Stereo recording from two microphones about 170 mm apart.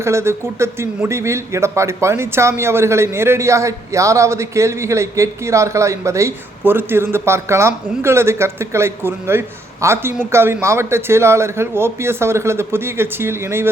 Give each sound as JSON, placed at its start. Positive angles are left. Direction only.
{"t": 0.0, "sound": "a man's voice", "side_deg": -15}